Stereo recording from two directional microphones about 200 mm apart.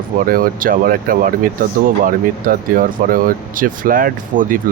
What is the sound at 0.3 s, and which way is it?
Speech, 45° right (ahead or behind).